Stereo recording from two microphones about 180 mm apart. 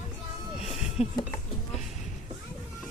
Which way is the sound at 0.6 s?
Centre (ahead or behind).